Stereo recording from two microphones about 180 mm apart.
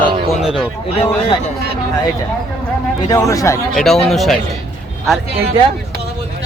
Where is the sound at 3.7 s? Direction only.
Centre (ahead or behind).